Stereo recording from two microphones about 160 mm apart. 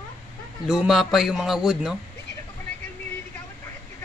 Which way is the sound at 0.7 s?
5° right (ahead or behind).